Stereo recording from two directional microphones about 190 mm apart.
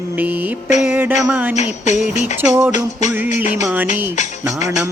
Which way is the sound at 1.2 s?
5° right (ahead or behind).